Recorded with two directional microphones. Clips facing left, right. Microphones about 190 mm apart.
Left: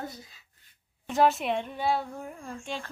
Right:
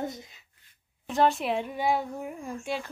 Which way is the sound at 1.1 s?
Centre (ahead or behind).